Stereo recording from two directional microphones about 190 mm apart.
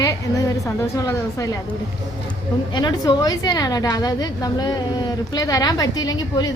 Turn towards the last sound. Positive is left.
turn(degrees=20)  # may be behind; listen again after turning